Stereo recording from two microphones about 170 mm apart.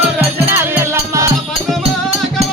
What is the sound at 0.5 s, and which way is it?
Music, 15° right (ahead or behind).